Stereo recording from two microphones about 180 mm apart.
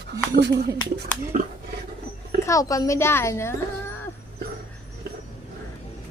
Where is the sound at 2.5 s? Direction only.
20° left (ahead or behind).